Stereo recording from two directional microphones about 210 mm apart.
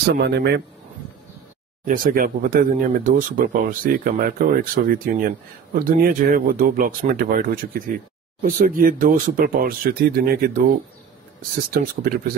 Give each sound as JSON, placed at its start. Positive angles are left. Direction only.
{"t": 0.0, "sound": "speech", "side_deg": -50}
{"t": 1.9, "sound": "speech", "side_deg": -45}
{"t": 11.7, "sound": "speech", "side_deg": -45}